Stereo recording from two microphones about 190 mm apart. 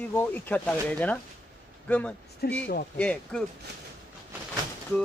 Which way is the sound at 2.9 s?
5° left (ahead or behind).